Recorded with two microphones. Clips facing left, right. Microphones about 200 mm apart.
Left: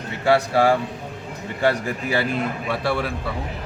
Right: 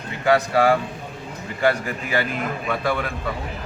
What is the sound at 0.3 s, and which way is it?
Speech, 30° left (ahead or behind).